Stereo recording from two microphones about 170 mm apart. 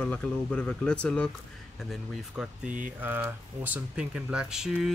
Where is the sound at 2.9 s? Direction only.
10° right (ahead or behind).